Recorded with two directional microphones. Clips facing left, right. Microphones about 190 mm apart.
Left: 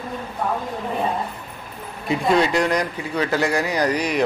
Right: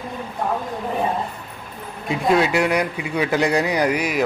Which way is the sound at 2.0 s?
5° right (ahead or behind).